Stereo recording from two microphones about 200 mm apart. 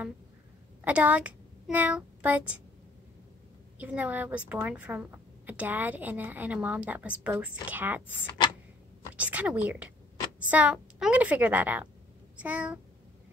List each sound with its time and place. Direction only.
0.8 s a child's voice: 5° right (ahead or behind)
3.7 s a woman's voice: 10° right (ahead or behind)